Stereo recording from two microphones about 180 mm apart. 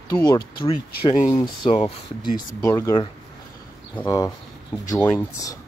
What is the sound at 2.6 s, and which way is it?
Speech, 15° left (ahead or behind).